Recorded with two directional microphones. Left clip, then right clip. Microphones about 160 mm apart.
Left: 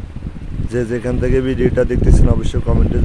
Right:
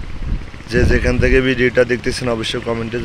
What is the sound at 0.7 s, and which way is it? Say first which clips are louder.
Speech: right 4 dB; 30° left (ahead or behind).